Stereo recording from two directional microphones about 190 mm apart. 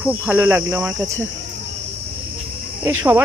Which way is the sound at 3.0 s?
10° right (ahead or behind).